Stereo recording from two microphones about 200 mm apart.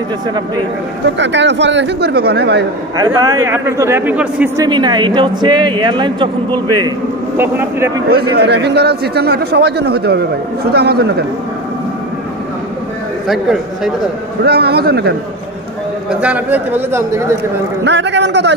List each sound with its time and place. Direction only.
1.0 s speech: 60° right (ahead or behind)
3.0 s a man's voice: 20° right (ahead or behind)
4.6 s speech: 20° right (ahead or behind)
7.3 s a man's voice: 10° right (ahead or behind)
8.1 s a man's voice: 55° right (ahead or behind)
13.3 s a man's voice: centre (ahead or behind)
14.4 s a man's voice: 55° right (ahead or behind)
16.1 s a man's voice: 5° right (ahead or behind)
17.8 s speech: 60° right (ahead or behind)